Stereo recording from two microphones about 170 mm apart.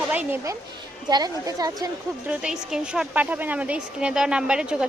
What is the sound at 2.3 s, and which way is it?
A woman's voice, 5° right (ahead or behind).